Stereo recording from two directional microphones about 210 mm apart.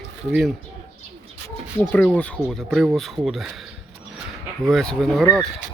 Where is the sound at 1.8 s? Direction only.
5° left (ahead or behind).